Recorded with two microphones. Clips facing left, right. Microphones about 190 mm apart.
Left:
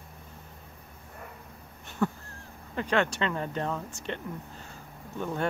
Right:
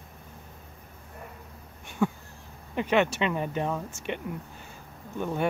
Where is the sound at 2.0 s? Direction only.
15° right (ahead or behind).